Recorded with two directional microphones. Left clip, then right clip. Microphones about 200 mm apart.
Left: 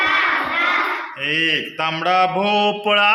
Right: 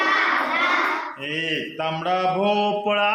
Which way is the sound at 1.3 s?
50° left (ahead or behind).